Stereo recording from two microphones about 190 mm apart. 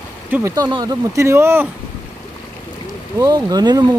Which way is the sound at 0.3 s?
15° right (ahead or behind).